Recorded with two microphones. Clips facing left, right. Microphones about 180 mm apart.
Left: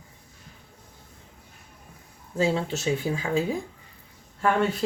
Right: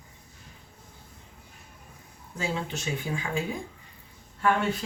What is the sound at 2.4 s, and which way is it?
Speech, 30° left (ahead or behind).